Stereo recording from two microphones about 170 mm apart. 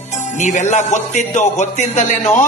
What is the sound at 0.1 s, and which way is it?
Speech, 45° left (ahead or behind).